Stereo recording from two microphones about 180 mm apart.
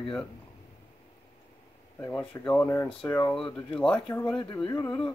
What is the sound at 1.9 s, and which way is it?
Speech, 10° left (ahead or behind).